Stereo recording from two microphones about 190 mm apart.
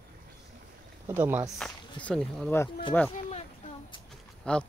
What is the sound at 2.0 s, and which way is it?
Speech, 5° left (ahead or behind).